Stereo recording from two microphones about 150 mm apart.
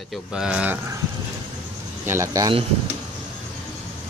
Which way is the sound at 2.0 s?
20° right (ahead or behind).